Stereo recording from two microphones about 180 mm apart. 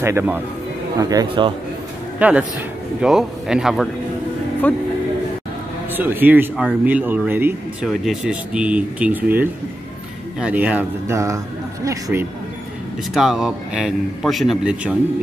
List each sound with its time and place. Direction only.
0.0 s speech: 15° right (ahead or behind)
2.1 s a man's voice: 10° right (ahead or behind)
5.9 s a man's voice: 10° right (ahead or behind)
13.1 s a man's voice: 5° right (ahead or behind)